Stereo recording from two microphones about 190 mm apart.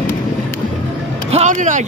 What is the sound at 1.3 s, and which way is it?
Music, 40° right (ahead or behind).